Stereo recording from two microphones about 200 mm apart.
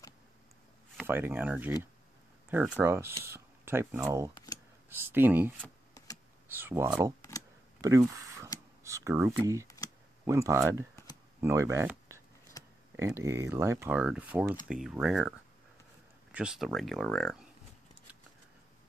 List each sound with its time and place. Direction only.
1.0 s speech: 10° right (ahead or behind)
6.6 s speech: 10° right (ahead or behind)
7.2 s a sound: 15° left (ahead or behind)
7.8 s speech: 15° right (ahead or behind)
12.6 s camera: 20° left (ahead or behind)
12.9 s speech: 15° right (ahead or behind)